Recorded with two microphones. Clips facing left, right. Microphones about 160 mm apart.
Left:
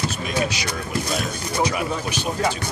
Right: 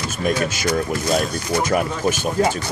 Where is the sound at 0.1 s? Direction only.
50° right (ahead or behind).